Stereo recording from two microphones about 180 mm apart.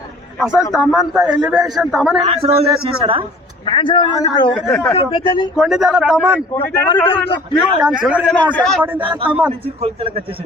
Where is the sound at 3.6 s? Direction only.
25° left (ahead or behind).